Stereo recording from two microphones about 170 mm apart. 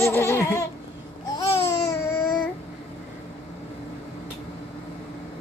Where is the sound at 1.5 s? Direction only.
15° left (ahead or behind).